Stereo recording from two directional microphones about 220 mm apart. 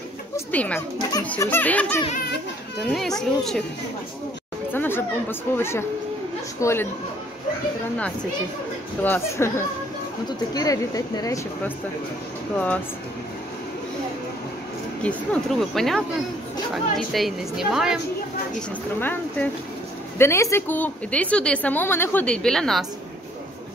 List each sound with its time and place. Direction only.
0.5 s a woman's voice: 5° left (ahead or behind)
4.7 s a woman's voice: 10° left (ahead or behind)
9.0 s a woman's voice: 10° left (ahead or behind)
15.7 s a woman's voice: centre (ahead or behind)
18.9 s a woman's voice: 10° left (ahead or behind)